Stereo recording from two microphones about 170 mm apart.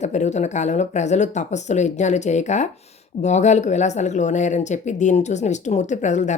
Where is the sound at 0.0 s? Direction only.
45° left (ahead or behind).